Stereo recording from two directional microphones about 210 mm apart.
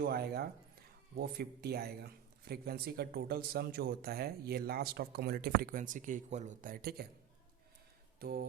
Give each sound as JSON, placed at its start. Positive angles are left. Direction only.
{"t": 0.0, "sound": "speech", "side_deg": -45}
{"t": 8.2, "sound": "speech", "side_deg": -45}